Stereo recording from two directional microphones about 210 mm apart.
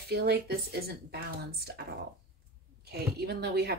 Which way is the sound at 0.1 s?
50° right (ahead or behind).